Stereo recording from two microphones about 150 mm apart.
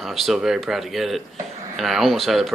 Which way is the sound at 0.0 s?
Centre (ahead or behind).